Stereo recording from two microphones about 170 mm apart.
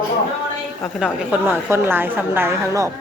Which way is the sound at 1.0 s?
10° right (ahead or behind).